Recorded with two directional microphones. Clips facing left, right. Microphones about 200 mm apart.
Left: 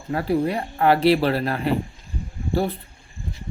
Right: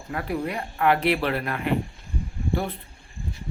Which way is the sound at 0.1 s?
30° left (ahead or behind).